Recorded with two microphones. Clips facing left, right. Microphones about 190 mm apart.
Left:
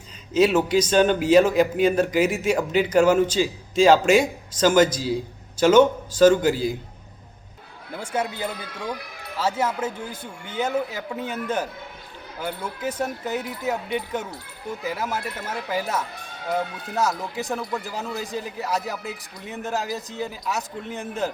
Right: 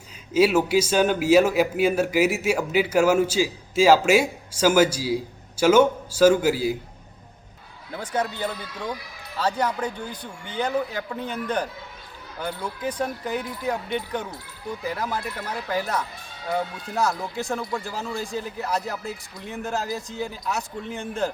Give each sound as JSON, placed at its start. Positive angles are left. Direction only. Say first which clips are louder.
{"t": 0.3, "sound": "a man's voice", "louder": "even", "side_deg": -10}
{"t": 7.9, "sound": "a man's voice", "louder": "even", "side_deg": 10}
{"t": 9.0, "sound": "music", "louder": "left 3 dB", "side_deg": 60}
{"t": 9.4, "sound": "a man's voice", "louder": "even", "side_deg": 5}